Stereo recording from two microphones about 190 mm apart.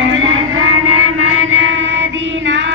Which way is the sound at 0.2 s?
90° right.